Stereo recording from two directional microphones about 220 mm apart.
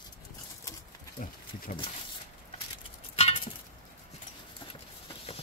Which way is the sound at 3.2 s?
25° left (ahead or behind).